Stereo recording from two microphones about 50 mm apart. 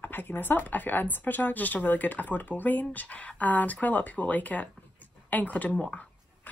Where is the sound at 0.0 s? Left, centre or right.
Left.